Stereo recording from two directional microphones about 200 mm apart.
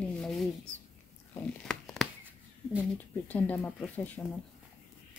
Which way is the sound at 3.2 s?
10° left (ahead or behind).